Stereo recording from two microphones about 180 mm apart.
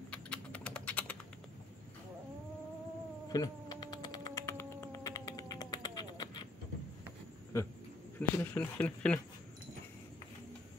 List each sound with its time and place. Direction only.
0.1 s typing: 5° left (ahead or behind)
3.3 s insect: 20° left (ahead or behind)
7.5 s speech: 15° left (ahead or behind)